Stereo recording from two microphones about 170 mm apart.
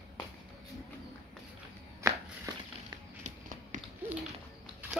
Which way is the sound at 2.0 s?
20° right (ahead or behind).